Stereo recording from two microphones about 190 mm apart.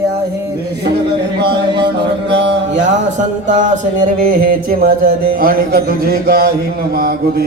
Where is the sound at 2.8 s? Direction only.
40° right (ahead or behind).